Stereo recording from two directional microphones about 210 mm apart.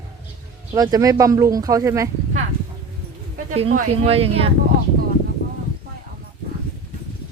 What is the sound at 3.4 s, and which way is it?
Speech, 35° right (ahead or behind).